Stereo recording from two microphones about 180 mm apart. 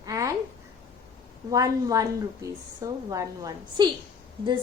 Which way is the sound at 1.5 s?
20° right (ahead or behind).